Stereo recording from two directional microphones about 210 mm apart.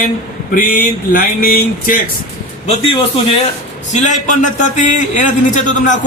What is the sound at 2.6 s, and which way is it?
A man's voice, 30° left (ahead or behind).